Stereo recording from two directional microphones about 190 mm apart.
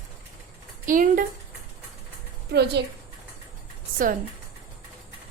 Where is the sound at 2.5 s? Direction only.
60° right (ahead or behind).